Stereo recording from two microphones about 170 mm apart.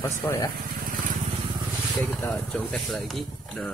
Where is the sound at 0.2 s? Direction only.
15° left (ahead or behind).